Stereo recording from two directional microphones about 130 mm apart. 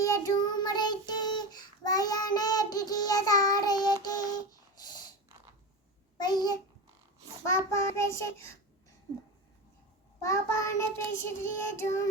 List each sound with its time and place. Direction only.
0.0 s child singing: 30° left (ahead or behind)
4.8 s snort: 30° left (ahead or behind)
6.1 s a child's voice: 30° left (ahead or behind)
7.7 s child singing: 20° left (ahead or behind)
10.2 s child singing: 20° left (ahead or behind)